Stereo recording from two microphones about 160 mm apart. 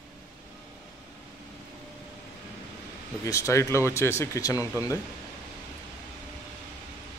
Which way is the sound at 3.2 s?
20° left (ahead or behind).